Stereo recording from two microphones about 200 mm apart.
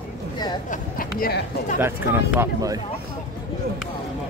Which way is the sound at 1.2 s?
50° left (ahead or behind).